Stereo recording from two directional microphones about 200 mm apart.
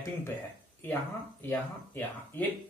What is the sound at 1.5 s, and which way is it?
Speech, 10° left (ahead or behind).